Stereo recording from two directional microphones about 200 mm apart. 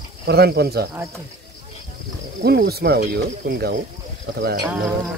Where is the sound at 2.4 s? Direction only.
55° right (ahead or behind).